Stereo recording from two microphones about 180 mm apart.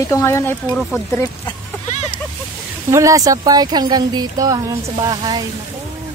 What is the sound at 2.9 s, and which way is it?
Speech, 20° right (ahead or behind).